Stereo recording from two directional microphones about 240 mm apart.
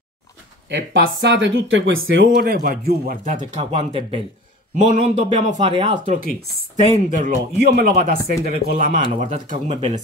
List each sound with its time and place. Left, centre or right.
0.7 s a man's voice: right
9.0 s speech: right